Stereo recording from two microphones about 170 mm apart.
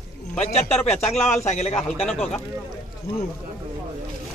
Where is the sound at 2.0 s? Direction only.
5° left (ahead or behind).